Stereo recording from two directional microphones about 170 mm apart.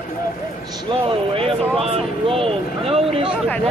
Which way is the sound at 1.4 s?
35° right (ahead or behind).